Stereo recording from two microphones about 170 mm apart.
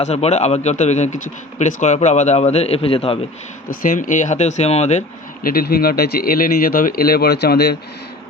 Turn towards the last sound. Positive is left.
turn(degrees=75)  # may be behind; listen again after turning